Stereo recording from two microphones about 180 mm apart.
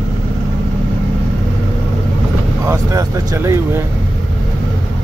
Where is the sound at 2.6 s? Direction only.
15° right (ahead or behind).